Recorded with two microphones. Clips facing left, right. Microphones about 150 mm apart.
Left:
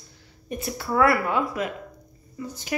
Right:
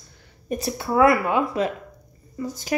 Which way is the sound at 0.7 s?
20° right (ahead or behind).